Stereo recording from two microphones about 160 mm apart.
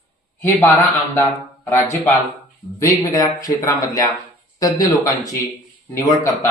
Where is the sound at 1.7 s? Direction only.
20° left (ahead or behind).